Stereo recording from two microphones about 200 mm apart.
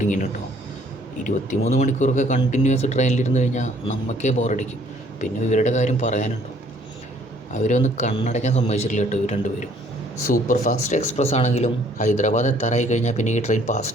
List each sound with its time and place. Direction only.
0.0 s a sound: 40° left (ahead or behind)
1.6 s speech: 40° left (ahead or behind)
7.6 s speech: 40° left (ahead or behind)